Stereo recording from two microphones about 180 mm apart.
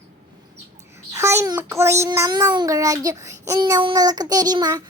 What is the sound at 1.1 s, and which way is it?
A child's voice, 15° right (ahead or behind).